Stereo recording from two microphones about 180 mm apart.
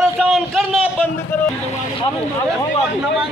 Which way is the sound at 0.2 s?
Centre (ahead or behind).